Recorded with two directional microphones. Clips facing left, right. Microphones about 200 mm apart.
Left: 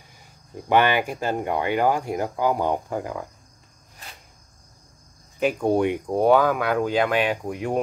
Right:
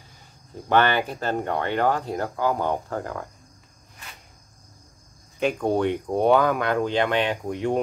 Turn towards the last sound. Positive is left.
turn(degrees=5)  # may be behind; listen again after turning